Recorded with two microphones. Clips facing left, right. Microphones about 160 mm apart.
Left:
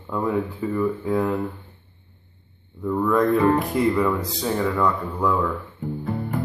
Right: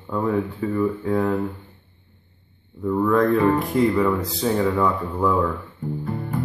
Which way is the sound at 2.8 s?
Centre (ahead or behind).